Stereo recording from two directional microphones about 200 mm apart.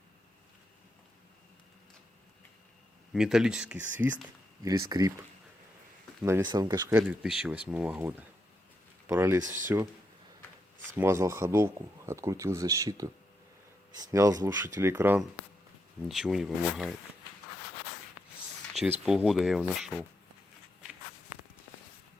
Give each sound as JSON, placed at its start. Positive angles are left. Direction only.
{"t": 3.1, "sound": "speech", "side_deg": 0}
{"t": 6.2, "sound": "speech", "side_deg": -15}
{"t": 7.1, "sound": "speech", "side_deg": -5}
{"t": 10.9, "sound": "speech", "side_deg": -15}
{"t": 18.7, "sound": "speech", "side_deg": -5}